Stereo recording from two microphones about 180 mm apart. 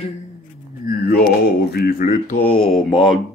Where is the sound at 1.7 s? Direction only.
50° left (ahead or behind).